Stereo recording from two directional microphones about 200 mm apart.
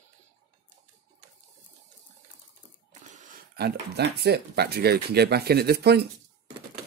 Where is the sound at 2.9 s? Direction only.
35° right (ahead or behind).